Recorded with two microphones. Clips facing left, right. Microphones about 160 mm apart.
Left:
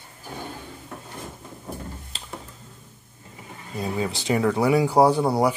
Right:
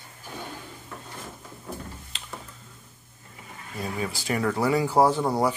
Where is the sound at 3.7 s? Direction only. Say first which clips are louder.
Left 4 dB; 25° left (ahead or behind).